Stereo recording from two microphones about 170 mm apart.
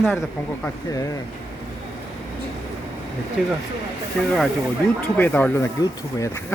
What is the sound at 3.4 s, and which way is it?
Speech, centre (ahead or behind).